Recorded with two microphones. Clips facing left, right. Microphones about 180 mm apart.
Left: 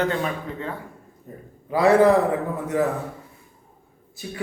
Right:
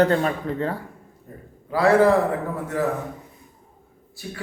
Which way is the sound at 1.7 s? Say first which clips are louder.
Left 1 dB; 20° left (ahead or behind).